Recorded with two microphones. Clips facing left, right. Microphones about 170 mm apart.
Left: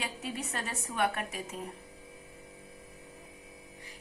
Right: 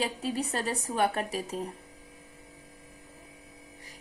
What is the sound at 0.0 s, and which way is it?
A woman's voice, 35° right (ahead or behind).